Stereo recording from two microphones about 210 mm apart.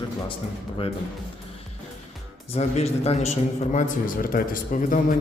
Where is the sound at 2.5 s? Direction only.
30° left (ahead or behind).